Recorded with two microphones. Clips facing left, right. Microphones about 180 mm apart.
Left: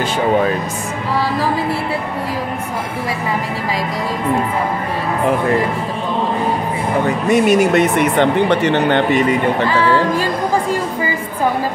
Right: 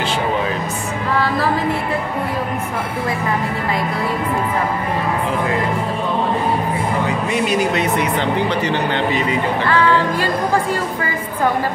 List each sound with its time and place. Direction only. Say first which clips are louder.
7.2 s speech: left 8 dB; 50° left (ahead or behind)
9.7 s speech: left 1 dB; 10° left (ahead or behind)